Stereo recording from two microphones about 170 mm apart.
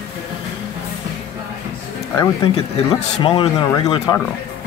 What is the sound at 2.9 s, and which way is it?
Speech, 40° left (ahead or behind).